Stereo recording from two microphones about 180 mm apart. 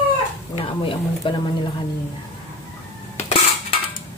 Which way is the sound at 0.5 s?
30° left (ahead or behind).